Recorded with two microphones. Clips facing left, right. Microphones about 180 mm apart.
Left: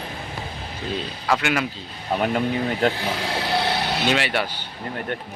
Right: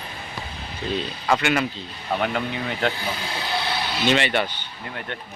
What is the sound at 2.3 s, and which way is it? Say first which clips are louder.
Speech: left 4 dB; 35° left (ahead or behind).